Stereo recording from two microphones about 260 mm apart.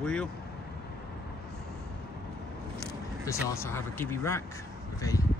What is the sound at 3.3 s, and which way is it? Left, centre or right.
Speech, centre.